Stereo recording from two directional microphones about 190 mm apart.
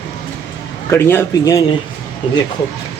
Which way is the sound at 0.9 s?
10° left (ahead or behind).